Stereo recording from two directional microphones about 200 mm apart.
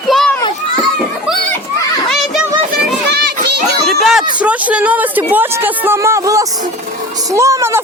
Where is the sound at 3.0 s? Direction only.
55° right (ahead or behind).